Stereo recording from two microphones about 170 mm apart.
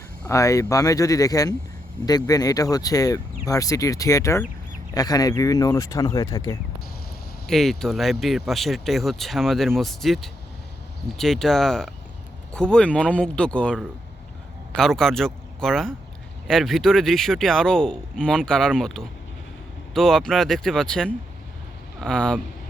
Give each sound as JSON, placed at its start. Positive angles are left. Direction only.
{"t": 0.3, "sound": "speech", "side_deg": 20}
{"t": 7.4, "sound": "speech", "side_deg": 0}